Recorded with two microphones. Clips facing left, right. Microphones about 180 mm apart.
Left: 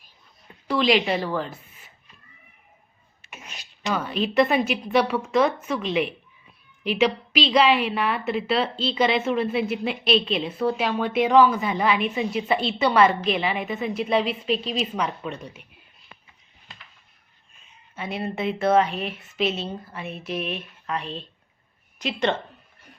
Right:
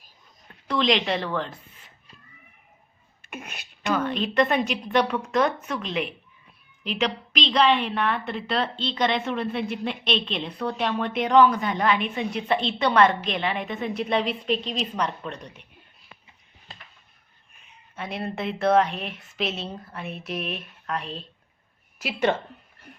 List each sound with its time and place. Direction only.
0.7 s a woman's voice: 5° left (ahead or behind)
3.2 s sneeze: 55° right (ahead or behind)
3.9 s a woman's voice: 5° left (ahead or behind)
17.9 s a woman's voice: centre (ahead or behind)